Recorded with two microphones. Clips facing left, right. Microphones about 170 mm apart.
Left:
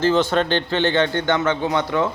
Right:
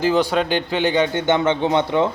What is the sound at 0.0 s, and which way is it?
A man's voice, 10° right (ahead or behind).